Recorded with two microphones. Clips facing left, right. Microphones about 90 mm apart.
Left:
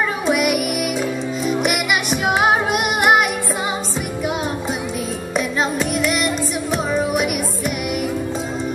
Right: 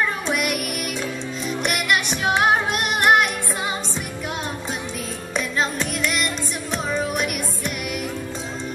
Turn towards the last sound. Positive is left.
turn(degrees=5)  # may be behind; listen again after turning